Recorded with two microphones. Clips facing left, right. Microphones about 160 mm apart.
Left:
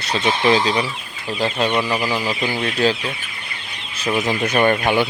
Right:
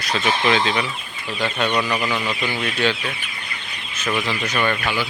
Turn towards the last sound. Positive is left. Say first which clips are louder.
# left 6 dB
turn(degrees=45)  # may be behind; listen again after turning